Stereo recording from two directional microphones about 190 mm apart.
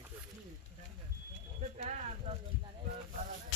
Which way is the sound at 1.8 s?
40° right (ahead or behind).